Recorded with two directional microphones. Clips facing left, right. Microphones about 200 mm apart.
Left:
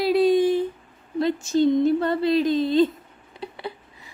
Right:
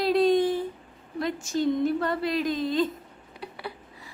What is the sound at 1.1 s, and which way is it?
Speech, 25° left (ahead or behind).